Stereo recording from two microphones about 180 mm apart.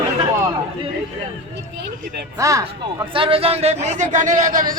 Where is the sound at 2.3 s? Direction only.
20° right (ahead or behind).